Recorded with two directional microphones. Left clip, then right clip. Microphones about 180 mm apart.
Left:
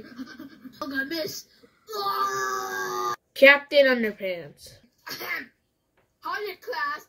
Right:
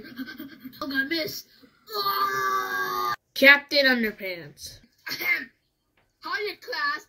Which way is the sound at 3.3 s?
5° right (ahead or behind).